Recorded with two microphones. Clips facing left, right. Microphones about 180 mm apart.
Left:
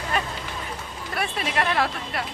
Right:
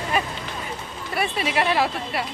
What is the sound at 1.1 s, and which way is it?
Speech, 5° right (ahead or behind).